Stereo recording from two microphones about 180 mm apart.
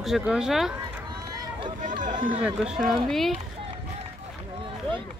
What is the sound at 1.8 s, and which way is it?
Run, 45° right (ahead or behind).